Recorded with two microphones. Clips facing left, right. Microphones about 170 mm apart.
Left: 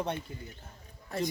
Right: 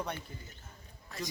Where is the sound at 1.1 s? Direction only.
55° left (ahead or behind).